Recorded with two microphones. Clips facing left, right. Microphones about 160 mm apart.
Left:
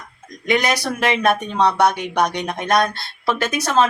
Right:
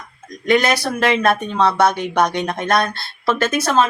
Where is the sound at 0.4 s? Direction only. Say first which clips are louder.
Right 3 dB; 15° left (ahead or behind).